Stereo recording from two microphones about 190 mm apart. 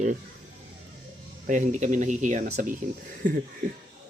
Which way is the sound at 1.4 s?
40° right (ahead or behind).